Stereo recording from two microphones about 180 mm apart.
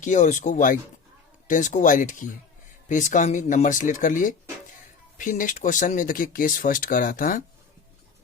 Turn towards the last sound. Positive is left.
turn(degrees=50)  # may be behind; listen again after turning